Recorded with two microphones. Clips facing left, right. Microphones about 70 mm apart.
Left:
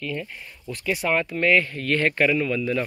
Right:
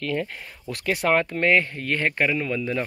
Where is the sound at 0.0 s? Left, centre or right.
Right.